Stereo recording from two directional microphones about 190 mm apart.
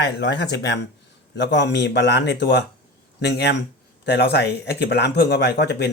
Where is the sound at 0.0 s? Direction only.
65° left (ahead or behind).